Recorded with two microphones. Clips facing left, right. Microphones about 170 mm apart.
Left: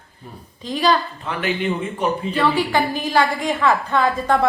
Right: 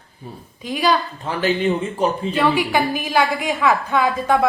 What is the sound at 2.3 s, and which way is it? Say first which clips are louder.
A woman's voice: even; 10° right (ahead or behind).